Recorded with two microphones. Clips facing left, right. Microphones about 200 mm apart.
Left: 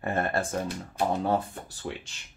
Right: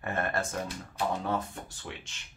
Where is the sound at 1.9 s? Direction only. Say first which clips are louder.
Left 8 dB; 35° left (ahead or behind).